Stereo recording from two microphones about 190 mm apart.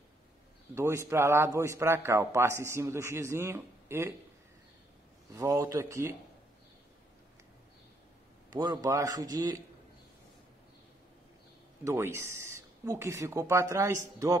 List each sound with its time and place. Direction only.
0.7 s a man's voice: 15° right (ahead or behind)
5.3 s a man's voice: 15° right (ahead or behind)
8.5 s a man's voice: 20° right (ahead or behind)
11.8 s a man's voice: 15° right (ahead or behind)